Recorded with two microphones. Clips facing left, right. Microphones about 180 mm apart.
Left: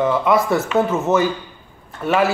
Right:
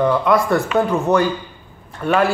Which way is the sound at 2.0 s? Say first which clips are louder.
Right 1 dB; 5° left (ahead or behind).